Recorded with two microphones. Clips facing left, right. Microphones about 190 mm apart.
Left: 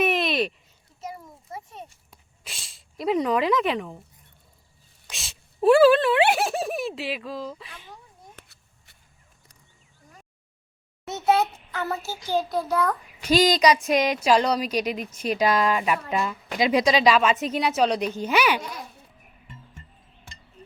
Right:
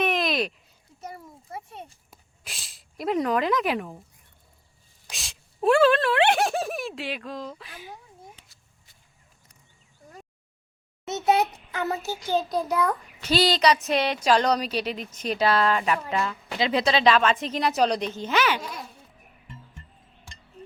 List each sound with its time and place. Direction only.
0.0 s a sound: 5° left (ahead or behind)
2.0 s speech: centre (ahead or behind)
5.1 s speech: centre (ahead or behind)
8.4 s a sound: 65° left (ahead or behind)
11.0 s a child's voice: 20° right (ahead or behind)
13.2 s a woman's voice: 10° left (ahead or behind)